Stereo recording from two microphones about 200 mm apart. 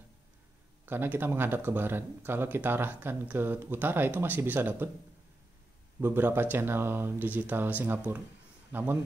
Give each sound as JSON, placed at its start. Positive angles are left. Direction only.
{"t": 0.8, "sound": "speech", "side_deg": -10}
{"t": 5.9, "sound": "speech", "side_deg": -10}